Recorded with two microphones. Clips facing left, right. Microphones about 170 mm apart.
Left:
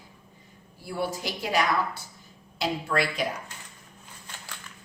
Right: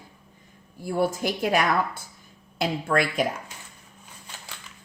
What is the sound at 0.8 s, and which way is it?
A woman's voice, 45° right (ahead or behind).